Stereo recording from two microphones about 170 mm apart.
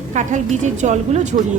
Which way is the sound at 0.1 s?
45° right (ahead or behind).